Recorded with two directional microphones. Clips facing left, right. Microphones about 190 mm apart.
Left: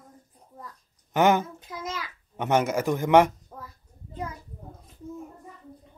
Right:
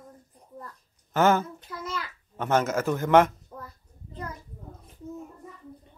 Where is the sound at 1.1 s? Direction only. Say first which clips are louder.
Left 1 dB; 15° left (ahead or behind).